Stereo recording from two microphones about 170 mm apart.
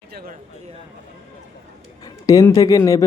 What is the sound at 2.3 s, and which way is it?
Speech, 20° left (ahead or behind).